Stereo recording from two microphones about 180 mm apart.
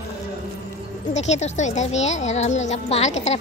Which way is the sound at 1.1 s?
40° left (ahead or behind).